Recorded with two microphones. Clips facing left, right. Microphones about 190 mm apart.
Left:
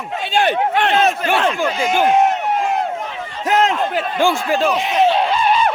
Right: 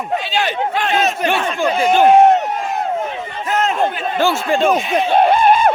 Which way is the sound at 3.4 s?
90° left.